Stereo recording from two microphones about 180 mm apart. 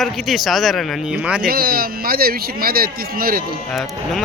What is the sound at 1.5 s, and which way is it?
Speech, 55° right (ahead or behind).